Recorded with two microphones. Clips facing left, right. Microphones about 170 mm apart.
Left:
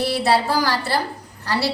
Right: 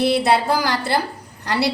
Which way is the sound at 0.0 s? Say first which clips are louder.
Right 2 dB; 20° right (ahead or behind).